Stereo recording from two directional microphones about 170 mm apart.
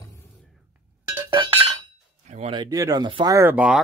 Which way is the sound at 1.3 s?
30° right (ahead or behind).